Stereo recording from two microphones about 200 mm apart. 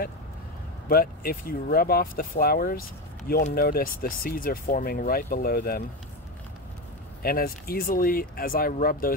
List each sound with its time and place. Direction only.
0.8 s speech: 50° left (ahead or behind)
7.2 s speech: 45° left (ahead or behind)